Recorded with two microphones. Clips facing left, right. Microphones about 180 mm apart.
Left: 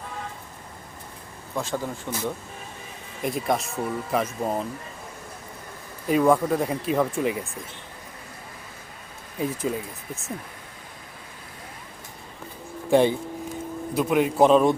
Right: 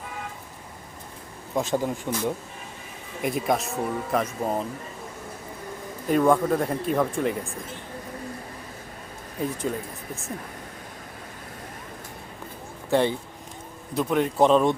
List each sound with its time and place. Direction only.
1.5 s speech: 20° right (ahead or behind)
3.2 s speech: centre (ahead or behind)
6.1 s speech: 5° left (ahead or behind)
9.7 s speech: 5° left (ahead or behind)
12.9 s speech: 15° left (ahead or behind)